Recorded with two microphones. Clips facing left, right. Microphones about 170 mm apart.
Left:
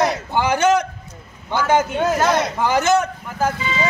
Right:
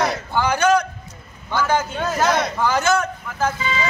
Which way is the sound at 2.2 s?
Centre (ahead or behind).